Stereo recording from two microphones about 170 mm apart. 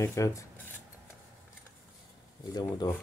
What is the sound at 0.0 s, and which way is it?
Cutlery, 20° left (ahead or behind).